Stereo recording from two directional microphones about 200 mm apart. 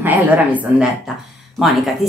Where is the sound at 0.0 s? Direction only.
10° right (ahead or behind).